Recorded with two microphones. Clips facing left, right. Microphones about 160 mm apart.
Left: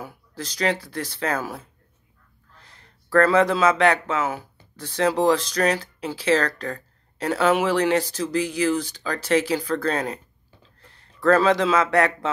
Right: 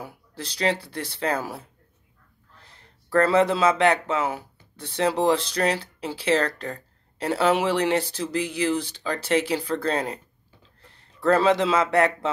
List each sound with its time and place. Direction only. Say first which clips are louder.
0.0 s speech: left 2 dB; 30° right (ahead or behind)
2.7 s speech: left 2 dB; 25° right (ahead or behind)